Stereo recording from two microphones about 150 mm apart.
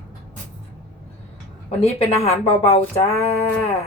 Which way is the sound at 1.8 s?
45° left (ahead or behind).